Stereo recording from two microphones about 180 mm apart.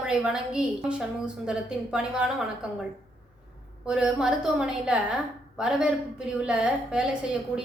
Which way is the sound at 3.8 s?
5° right (ahead or behind).